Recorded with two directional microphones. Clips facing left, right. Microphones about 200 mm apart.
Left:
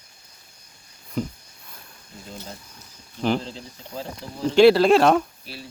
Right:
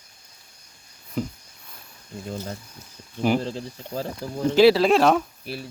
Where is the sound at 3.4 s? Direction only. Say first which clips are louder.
Right 6 dB; 50° right (ahead or behind).